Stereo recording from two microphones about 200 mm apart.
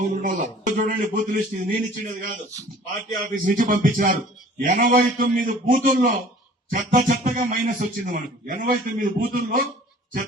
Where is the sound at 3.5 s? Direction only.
40° right (ahead or behind).